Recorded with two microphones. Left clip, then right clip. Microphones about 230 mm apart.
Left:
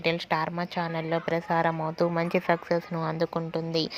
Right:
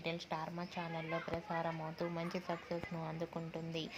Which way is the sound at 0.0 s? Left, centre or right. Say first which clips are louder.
Left 15 dB; left.